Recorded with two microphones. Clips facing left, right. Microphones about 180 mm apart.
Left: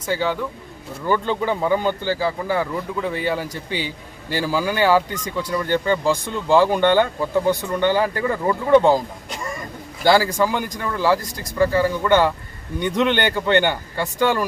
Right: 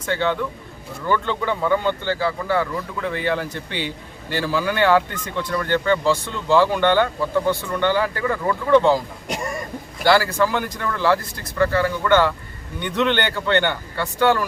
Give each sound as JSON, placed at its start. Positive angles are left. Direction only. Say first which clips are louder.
{"t": 0.0, "sound": "speech", "louder": "even", "side_deg": 10}
{"t": 10.0, "sound": "speech", "louder": "left 1 dB", "side_deg": 15}